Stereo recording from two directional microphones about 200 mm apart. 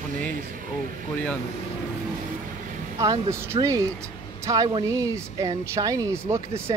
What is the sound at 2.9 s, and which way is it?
Speech, 15° right (ahead or behind).